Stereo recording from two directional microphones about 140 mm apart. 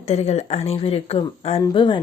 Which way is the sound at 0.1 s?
50° left (ahead or behind).